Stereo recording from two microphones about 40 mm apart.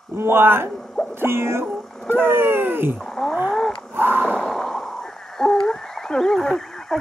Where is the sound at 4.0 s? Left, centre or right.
Right.